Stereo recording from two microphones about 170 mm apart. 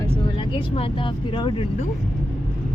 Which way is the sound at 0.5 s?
30° left (ahead or behind).